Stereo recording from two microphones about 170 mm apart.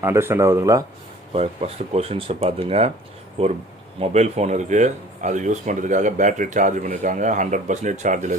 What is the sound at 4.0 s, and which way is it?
Speech, 40° right (ahead or behind).